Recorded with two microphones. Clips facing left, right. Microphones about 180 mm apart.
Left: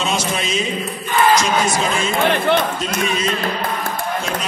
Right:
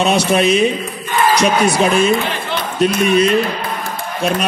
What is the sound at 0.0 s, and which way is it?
A man's voice, 65° right (ahead or behind).